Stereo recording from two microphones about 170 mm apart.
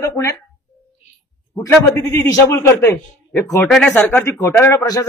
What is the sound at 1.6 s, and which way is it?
A man's voice, 15° left (ahead or behind).